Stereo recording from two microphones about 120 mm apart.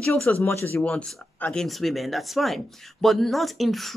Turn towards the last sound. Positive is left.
turn(degrees=0)  # may be behind; listen again after turning